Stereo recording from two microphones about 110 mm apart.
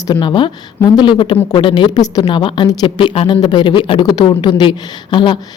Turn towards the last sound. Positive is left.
turn(degrees=45)  # may be behind; listen again after turning